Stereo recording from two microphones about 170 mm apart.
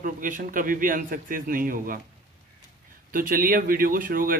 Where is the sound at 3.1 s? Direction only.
55° right (ahead or behind).